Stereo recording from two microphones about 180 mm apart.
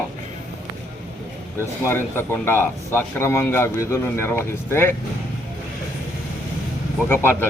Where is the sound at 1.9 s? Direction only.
10° left (ahead or behind).